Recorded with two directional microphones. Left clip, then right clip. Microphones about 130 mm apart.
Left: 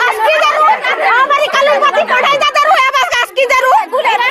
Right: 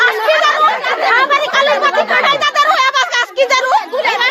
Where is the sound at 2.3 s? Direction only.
15° left (ahead or behind).